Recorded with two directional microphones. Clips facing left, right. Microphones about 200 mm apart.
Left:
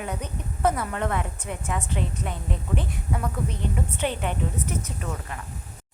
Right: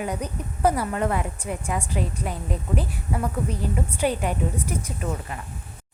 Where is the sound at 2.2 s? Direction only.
35° right (ahead or behind).